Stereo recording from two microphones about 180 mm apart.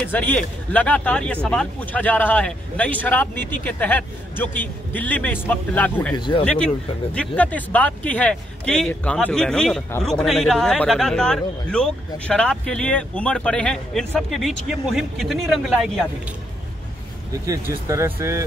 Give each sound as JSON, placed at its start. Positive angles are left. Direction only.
{"t": 0.0, "sound": "speech", "side_deg": 10}
{"t": 6.1, "sound": "speech", "side_deg": 25}
{"t": 6.4, "sound": "speech", "side_deg": 5}
{"t": 17.3, "sound": "speech", "side_deg": -15}